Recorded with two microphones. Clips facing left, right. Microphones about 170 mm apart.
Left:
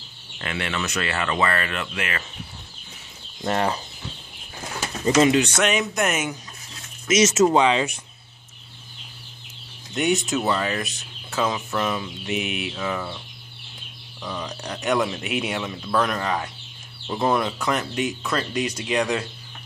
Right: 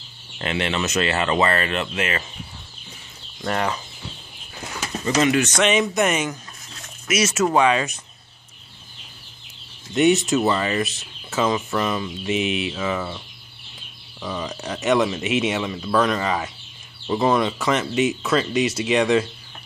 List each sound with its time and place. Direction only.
0.4 s speech: 25° right (ahead or behind)
3.4 s speech: 30° left (ahead or behind)
5.0 s speech: 25° left (ahead or behind)
5.6 s speech: centre (ahead or behind)
7.1 s speech: 20° left (ahead or behind)
9.9 s speech: centre (ahead or behind)
14.2 s speech: centre (ahead or behind)